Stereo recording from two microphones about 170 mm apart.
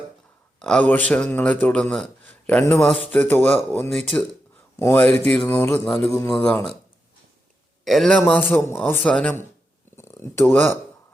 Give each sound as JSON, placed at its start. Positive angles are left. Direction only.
{"t": 0.6, "sound": "a man's voice", "side_deg": 5}
{"t": 4.8, "sound": "a man's voice", "side_deg": 15}
{"t": 7.9, "sound": "a man's voice", "side_deg": 0}
{"t": 9.9, "sound": "a sound", "side_deg": 15}